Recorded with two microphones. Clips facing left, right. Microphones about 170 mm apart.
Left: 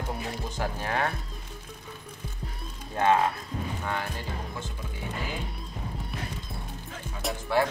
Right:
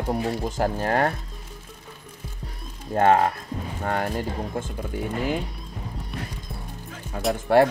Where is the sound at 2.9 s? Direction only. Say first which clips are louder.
Right 5 dB; 50° right (ahead or behind).